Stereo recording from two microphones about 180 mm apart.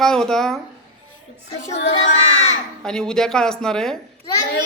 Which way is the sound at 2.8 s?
5° left (ahead or behind).